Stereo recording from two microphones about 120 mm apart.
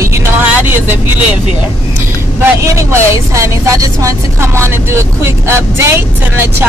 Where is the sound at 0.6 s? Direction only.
20° right (ahead or behind).